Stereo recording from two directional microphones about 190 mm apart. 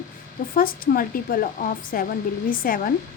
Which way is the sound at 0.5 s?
50° left (ahead or behind).